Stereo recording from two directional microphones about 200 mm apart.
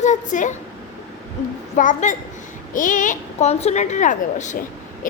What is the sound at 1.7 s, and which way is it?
A child's voice, 40° left (ahead or behind).